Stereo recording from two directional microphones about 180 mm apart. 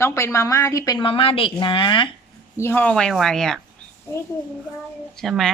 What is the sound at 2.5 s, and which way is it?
Speech, 10° left (ahead or behind).